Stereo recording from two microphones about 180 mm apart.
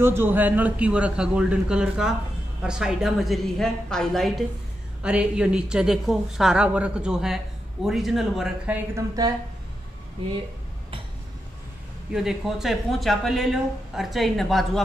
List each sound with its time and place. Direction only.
0.0 s a man's voice: 15° right (ahead or behind)
8.9 s speech: 20° right (ahead or behind)
12.1 s speech: 5° right (ahead or behind)